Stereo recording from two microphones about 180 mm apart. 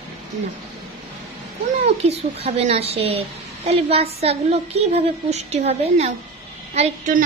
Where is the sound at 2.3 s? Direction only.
35° right (ahead or behind).